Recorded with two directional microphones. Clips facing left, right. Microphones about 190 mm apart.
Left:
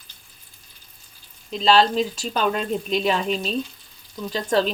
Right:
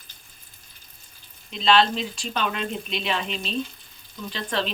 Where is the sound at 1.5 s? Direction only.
40° left (ahead or behind).